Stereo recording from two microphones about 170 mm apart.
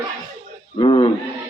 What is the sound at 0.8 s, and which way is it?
Speech, 30° left (ahead or behind).